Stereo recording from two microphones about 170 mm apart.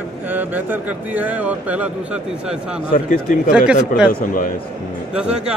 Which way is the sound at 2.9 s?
55° left (ahead or behind).